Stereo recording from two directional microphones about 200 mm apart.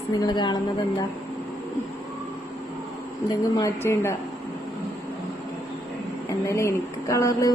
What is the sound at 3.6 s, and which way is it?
Speech, 15° left (ahead or behind).